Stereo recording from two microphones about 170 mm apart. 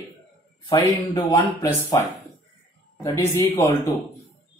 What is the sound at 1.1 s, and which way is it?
Speech, 20° left (ahead or behind).